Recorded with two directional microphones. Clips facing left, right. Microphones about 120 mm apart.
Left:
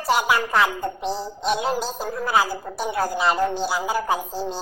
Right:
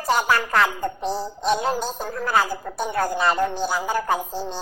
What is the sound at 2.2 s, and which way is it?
Speech, 10° left (ahead or behind).